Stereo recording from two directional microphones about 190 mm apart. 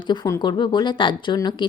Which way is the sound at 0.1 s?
25° left (ahead or behind).